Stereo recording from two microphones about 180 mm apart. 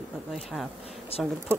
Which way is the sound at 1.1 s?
35° left (ahead or behind).